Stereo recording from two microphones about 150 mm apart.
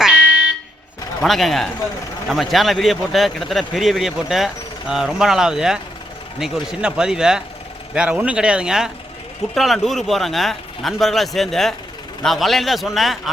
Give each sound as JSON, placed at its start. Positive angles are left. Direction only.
{"t": 1.2, "sound": "a man's voice", "side_deg": 0}